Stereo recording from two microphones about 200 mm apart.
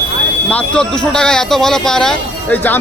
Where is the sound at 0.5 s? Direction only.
5° left (ahead or behind).